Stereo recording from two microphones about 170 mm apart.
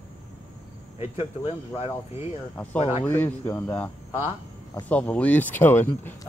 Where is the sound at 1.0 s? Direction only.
35° left (ahead or behind).